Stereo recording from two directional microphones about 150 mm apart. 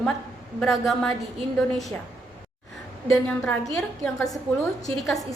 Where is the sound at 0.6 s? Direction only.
Centre (ahead or behind).